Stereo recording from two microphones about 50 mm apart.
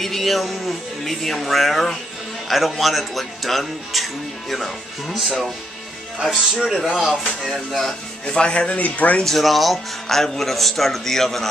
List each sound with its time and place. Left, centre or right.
0.0 s speech: centre
7.5 s speech: centre
8.4 s speech: left
9.2 s speech: centre